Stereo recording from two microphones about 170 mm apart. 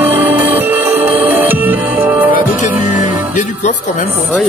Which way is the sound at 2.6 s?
45° left (ahead or behind).